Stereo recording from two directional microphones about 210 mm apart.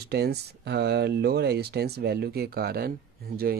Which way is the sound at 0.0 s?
50° right (ahead or behind).